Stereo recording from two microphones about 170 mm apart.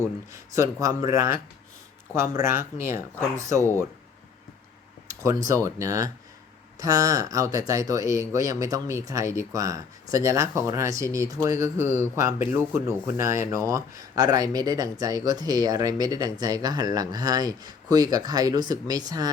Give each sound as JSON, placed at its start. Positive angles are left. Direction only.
{"t": 0.3, "sound": "speech", "side_deg": -15}
{"t": 5.5, "sound": "speech", "side_deg": -20}